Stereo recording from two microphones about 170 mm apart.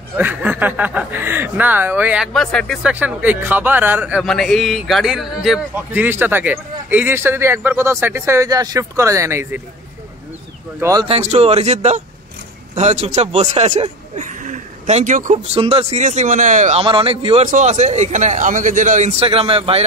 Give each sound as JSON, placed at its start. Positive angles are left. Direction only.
{"t": 0.2, "sound": "speech", "side_deg": -10}
{"t": 2.9, "sound": "speech", "side_deg": -10}
{"t": 5.8, "sound": "speech", "side_deg": -10}
{"t": 10.8, "sound": "speech", "side_deg": -20}
{"t": 11.1, "sound": "a man's voice", "side_deg": -40}
{"t": 15.3, "sound": "a man's voice", "side_deg": -35}
{"t": 16.8, "sound": "a man's voice", "side_deg": -30}
{"t": 17.5, "sound": "a man's voice", "side_deg": -45}